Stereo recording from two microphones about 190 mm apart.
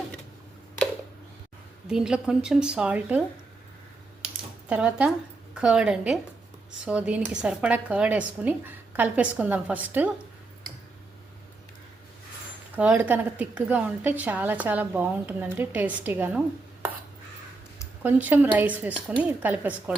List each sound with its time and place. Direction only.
1.9 s speech: 5° right (ahead or behind)
4.2 s typing: 35° right (ahead or behind)
4.7 s a woman's voice: 5° right (ahead or behind)
12.7 s a woman's voice: 10° right (ahead or behind)
18.0 s a woman's voice: 10° right (ahead or behind)